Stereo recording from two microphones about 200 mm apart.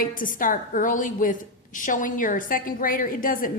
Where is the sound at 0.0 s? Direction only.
40° left (ahead or behind).